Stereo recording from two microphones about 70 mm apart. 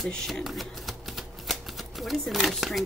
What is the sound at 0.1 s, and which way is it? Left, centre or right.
Speech, centre.